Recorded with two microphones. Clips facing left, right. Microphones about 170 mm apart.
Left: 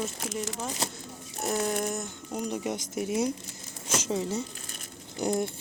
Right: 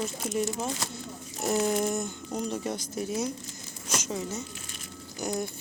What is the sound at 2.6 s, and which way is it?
Speech, 20° left (ahead or behind).